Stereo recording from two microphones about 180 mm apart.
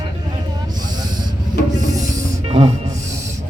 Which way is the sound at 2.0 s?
20° right (ahead or behind).